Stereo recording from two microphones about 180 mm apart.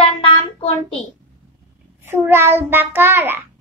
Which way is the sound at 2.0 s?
10° right (ahead or behind).